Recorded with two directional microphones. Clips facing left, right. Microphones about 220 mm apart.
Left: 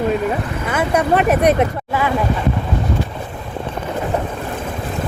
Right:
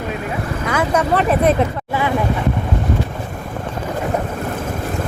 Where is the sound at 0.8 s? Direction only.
10° left (ahead or behind).